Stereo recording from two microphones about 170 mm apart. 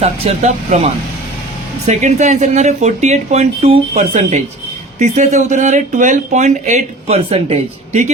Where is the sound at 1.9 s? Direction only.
45° right (ahead or behind).